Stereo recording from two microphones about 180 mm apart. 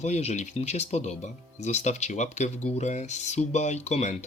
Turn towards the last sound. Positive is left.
turn(degrees=40)  # may be behind; listen again after turning